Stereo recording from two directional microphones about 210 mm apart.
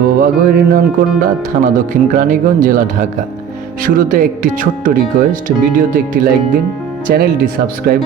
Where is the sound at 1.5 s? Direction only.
40° right (ahead or behind).